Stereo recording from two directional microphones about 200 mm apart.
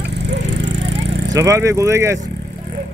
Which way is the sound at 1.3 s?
15° right (ahead or behind).